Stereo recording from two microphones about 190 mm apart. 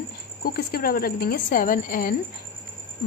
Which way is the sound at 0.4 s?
55° left (ahead or behind).